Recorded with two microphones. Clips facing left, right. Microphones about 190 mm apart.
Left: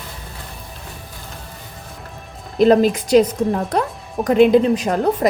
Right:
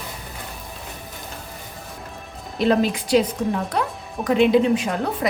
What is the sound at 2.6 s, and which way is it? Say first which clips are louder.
A woman's voice: left 6 dB; 45° left (ahead or behind).